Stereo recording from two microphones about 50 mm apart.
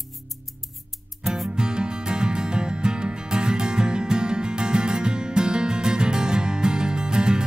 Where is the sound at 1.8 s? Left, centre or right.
Centre.